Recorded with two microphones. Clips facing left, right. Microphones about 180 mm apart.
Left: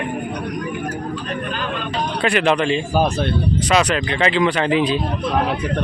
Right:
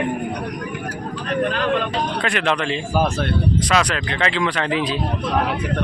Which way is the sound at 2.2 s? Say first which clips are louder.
Left 8 dB; 5° left (ahead or behind).